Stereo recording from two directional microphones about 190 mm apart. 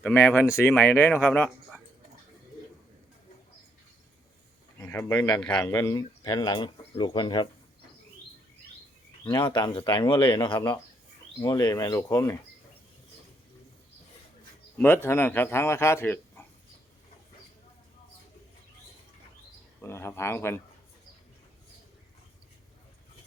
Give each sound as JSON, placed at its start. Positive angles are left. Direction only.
{"t": 0.0, "sound": "speech", "side_deg": 10}
{"t": 4.8, "sound": "a man's voice", "side_deg": 10}
{"t": 5.6, "sound": "speech", "side_deg": 15}
{"t": 9.4, "sound": "speech", "side_deg": 25}
{"t": 14.8, "sound": "speech", "side_deg": 10}
{"t": 19.8, "sound": "speech", "side_deg": 15}